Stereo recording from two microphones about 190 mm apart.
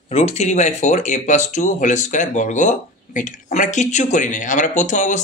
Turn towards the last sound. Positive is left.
turn(degrees=40)  # may be behind; listen again after turning